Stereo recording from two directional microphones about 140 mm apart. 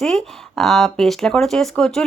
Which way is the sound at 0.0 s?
5° left (ahead or behind).